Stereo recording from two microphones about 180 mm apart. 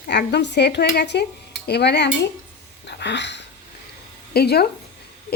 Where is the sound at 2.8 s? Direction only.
75° left (ahead or behind).